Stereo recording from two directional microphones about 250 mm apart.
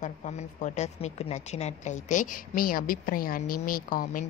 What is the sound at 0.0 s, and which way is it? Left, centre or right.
A woman's voice, left.